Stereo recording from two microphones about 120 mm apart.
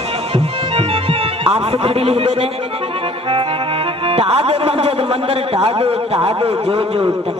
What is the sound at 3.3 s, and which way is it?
Music, 50° right (ahead or behind).